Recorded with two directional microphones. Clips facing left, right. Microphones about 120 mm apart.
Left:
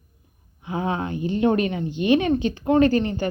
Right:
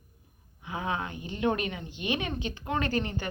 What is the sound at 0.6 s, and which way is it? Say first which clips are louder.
A woman's voice: left 7 dB; 35° left (ahead or behind).